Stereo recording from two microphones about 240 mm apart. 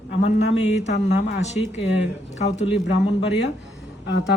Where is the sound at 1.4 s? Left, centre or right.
Left.